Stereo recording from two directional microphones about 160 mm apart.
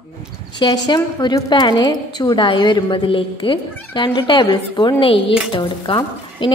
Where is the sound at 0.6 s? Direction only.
25° left (ahead or behind).